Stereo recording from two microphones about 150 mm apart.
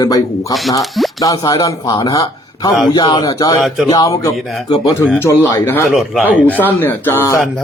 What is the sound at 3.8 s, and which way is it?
A man's voice, 25° left (ahead or behind).